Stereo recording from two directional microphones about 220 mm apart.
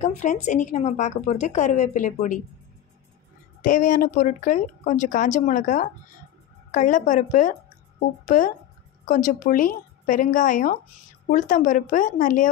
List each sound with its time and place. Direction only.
0.0 s a woman's voice: 35° left (ahead or behind)
3.6 s a woman's voice: 35° left (ahead or behind)